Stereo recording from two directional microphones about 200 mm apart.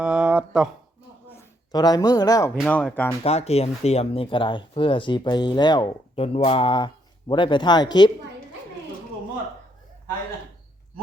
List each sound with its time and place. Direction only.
0.0 s speech: 5° right (ahead or behind)
1.4 s speech: 20° left (ahead or behind)
2.6 s speech: 5° left (ahead or behind)
3.2 s speech: 30° left (ahead or behind)